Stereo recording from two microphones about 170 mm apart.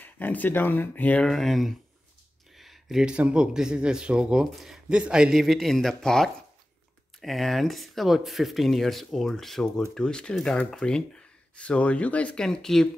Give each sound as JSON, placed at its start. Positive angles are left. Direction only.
{"t": 0.0, "sound": "speech", "side_deg": 10}